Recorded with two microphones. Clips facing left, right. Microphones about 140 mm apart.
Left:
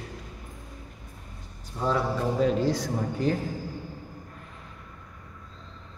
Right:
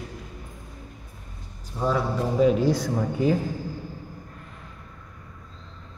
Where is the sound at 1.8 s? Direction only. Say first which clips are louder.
Right 2 dB; 10° right (ahead or behind).